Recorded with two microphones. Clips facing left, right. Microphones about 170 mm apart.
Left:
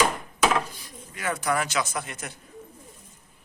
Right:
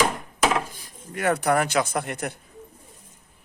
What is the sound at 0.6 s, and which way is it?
Speech, 50° right (ahead or behind).